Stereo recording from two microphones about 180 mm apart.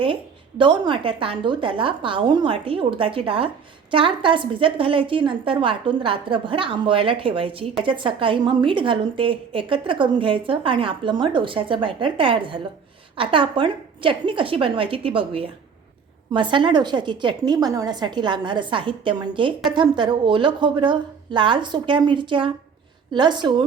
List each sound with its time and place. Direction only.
0.6 s a woman's voice: 30° right (ahead or behind)